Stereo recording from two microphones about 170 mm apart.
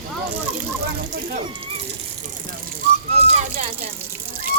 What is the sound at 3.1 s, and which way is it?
Whistling, 35° right (ahead or behind).